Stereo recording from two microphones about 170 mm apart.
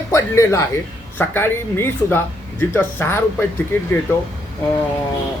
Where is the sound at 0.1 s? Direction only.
15° left (ahead or behind).